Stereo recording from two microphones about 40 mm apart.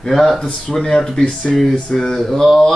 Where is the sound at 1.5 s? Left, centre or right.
Centre.